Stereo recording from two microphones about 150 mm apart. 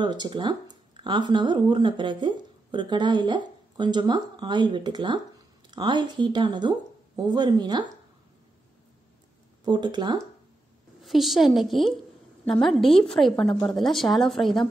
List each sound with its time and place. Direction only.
0.0 s speech: 30° right (ahead or behind)
9.7 s speech: 30° right (ahead or behind)
11.0 s a woman's voice: centre (ahead or behind)